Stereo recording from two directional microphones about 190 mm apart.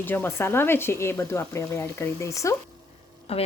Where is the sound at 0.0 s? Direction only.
10° left (ahead or behind).